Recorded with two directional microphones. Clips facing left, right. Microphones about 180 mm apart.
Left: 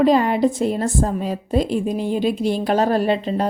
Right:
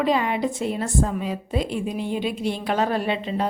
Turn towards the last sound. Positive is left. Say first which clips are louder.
# left 6 dB
turn(degrees=40)  # may be behind; listen again after turning